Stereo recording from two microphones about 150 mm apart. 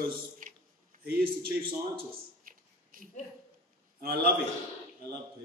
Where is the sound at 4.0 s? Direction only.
90° right.